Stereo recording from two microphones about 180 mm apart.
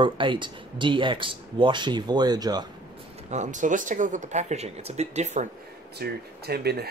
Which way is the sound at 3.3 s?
40° right (ahead or behind).